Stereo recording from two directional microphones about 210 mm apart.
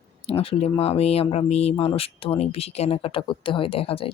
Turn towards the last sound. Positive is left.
turn(degrees=25)  # may be behind; listen again after turning